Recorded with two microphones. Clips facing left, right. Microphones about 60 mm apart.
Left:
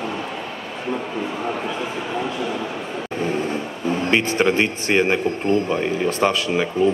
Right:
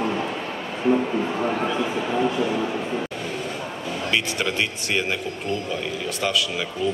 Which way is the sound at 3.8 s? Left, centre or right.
Left.